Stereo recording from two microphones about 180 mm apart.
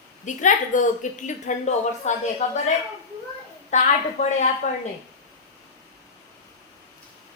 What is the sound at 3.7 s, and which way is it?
Speech, 40° left (ahead or behind).